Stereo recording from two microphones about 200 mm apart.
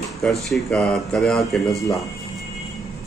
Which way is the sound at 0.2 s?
Centre (ahead or behind).